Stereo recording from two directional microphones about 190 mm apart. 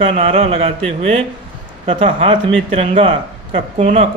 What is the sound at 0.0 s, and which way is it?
A man's voice, 30° right (ahead or behind).